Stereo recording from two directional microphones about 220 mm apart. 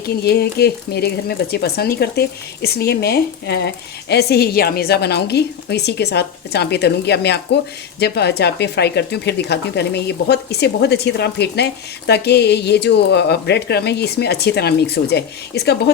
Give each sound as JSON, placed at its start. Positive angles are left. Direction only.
{"t": 0.2, "sound": "a woman's voice", "side_deg": 45}